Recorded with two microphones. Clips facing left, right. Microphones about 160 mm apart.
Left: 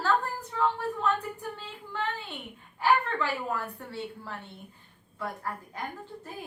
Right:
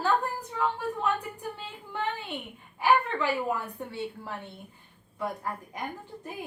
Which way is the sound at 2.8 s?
15° right (ahead or behind).